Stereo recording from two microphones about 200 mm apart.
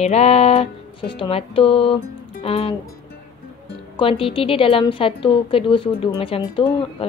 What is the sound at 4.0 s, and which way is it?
A woman's voice, 25° left (ahead or behind).